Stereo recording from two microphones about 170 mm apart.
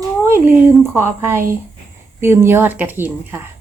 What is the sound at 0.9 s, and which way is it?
Speech, 15° right (ahead or behind).